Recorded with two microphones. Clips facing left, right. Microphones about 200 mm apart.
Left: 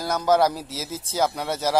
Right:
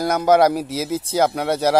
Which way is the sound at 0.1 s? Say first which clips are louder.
Right 4 dB; 60° right (ahead or behind).